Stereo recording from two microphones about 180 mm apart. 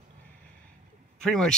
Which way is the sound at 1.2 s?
5° left (ahead or behind).